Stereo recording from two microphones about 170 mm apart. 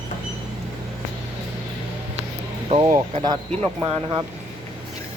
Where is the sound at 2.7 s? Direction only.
40° right (ahead or behind).